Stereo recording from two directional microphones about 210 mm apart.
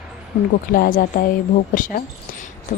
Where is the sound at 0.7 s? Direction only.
40° left (ahead or behind).